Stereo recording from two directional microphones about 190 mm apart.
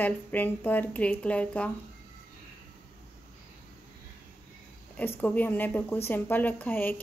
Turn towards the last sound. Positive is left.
turn(degrees=10)  # may be behind; listen again after turning